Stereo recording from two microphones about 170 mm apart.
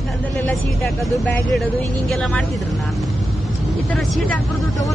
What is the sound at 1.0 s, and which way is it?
Speech, centre (ahead or behind).